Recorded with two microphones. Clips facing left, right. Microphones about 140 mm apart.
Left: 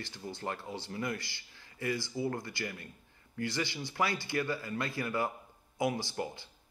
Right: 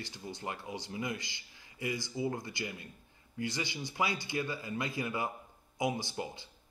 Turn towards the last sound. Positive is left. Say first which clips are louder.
# left 1 dB
turn(degrees=-20)  # may be behind; listen again after turning